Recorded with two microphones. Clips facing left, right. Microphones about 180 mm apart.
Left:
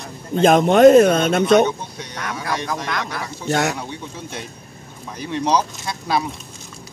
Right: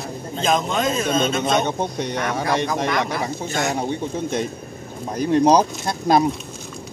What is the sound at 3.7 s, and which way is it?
Speech, 50° right (ahead or behind).